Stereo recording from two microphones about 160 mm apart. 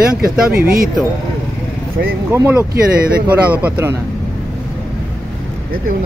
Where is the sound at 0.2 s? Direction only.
65° right (ahead or behind).